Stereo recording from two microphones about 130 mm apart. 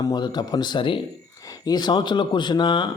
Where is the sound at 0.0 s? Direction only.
35° left (ahead or behind).